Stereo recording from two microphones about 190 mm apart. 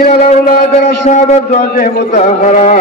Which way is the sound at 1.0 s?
35° left (ahead or behind).